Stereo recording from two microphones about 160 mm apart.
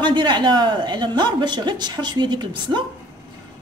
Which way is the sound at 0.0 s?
30° right (ahead or behind).